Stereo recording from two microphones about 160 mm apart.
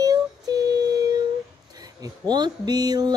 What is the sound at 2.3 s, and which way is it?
Mantra, 25° right (ahead or behind).